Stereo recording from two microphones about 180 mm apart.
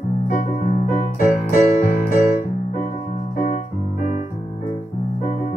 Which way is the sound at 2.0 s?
50° left (ahead or behind).